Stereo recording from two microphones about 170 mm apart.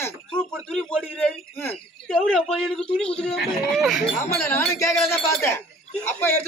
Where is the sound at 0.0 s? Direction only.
5° left (ahead or behind).